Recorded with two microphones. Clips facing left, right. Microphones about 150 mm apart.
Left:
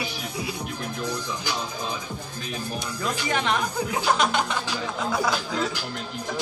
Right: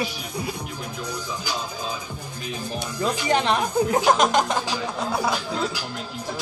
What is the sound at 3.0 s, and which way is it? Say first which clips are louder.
Speech: right 5 dB; 35° right (ahead or behind).